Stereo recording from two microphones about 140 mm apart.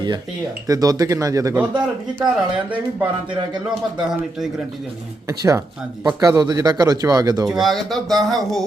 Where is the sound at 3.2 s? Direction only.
35° right (ahead or behind).